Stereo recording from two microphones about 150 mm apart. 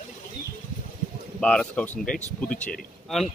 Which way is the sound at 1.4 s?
5° left (ahead or behind).